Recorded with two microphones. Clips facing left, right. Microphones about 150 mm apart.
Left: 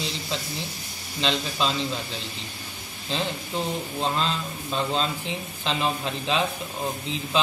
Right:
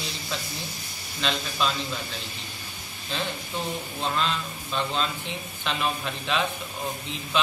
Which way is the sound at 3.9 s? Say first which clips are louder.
Left 1 dB; 35° left (ahead or behind).